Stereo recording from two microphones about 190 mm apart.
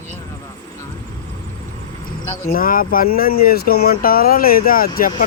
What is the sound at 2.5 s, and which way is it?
Speech, 50° left (ahead or behind).